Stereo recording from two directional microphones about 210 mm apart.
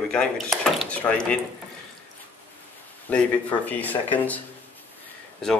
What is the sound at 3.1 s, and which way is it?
Speech, 5° left (ahead or behind).